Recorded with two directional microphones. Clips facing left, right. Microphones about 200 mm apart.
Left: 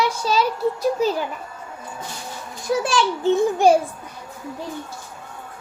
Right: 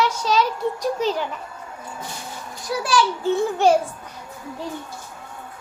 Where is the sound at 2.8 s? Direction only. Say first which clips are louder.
Right 2 dB; 25° left (ahead or behind).